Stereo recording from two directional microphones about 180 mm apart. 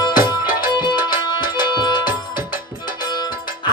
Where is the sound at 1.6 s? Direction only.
25° left (ahead or behind).